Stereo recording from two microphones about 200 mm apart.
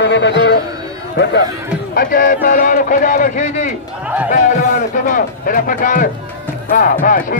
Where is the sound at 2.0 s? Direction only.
40° left (ahead or behind).